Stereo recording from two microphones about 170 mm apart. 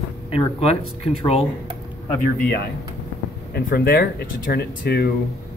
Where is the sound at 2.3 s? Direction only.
70° left (ahead or behind).